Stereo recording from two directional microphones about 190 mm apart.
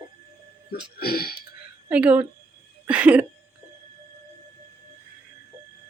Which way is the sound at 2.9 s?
10° right (ahead or behind).